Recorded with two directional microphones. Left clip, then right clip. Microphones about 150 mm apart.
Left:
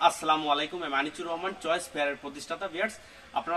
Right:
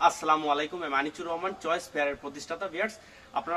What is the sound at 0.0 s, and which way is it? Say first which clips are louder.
A man's voice: right 1 dB; 5° right (ahead or behind).